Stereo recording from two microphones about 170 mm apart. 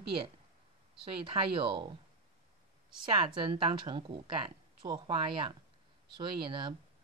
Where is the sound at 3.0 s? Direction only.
30° right (ahead or behind).